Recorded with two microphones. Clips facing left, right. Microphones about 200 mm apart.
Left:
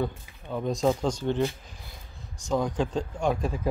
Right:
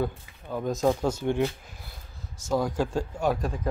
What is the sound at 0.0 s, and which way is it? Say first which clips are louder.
Speech: right 1 dB; centre (ahead or behind).